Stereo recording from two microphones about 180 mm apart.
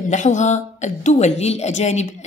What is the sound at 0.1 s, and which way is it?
A woman's voice, 40° left (ahead or behind).